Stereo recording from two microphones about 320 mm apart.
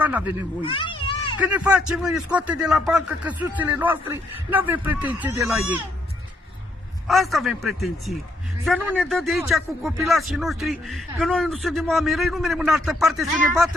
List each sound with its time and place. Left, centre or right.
0.0 s speech: centre
0.6 s a child's voice: centre
1.4 s speech: centre
7.1 s speech: centre